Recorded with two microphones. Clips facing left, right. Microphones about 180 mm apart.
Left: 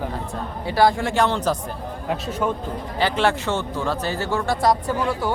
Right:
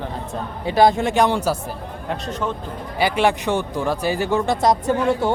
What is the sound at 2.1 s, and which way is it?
Speech, 5° left (ahead or behind).